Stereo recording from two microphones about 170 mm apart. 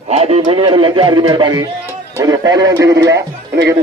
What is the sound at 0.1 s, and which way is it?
Speech, 35° right (ahead or behind).